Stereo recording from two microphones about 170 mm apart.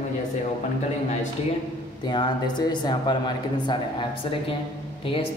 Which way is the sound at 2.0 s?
25° left (ahead or behind).